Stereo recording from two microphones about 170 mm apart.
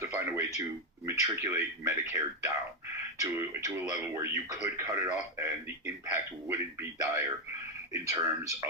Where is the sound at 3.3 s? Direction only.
15° right (ahead or behind).